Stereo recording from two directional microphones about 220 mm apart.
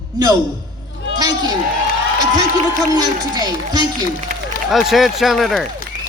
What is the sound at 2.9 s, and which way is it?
Speech, 20° right (ahead or behind).